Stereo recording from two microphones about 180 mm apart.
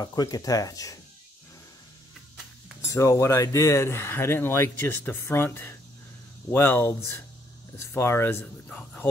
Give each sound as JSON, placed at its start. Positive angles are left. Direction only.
{"t": 0.0, "sound": "speech", "side_deg": 20}
{"t": 2.9, "sound": "speech", "side_deg": 15}